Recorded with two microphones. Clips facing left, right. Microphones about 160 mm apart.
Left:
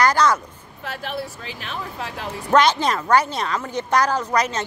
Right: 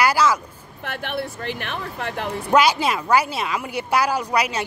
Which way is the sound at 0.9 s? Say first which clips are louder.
Right 1 dB; 60° right (ahead or behind).